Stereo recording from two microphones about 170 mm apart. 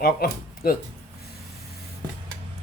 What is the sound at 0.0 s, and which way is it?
Speech, 60° left (ahead or behind).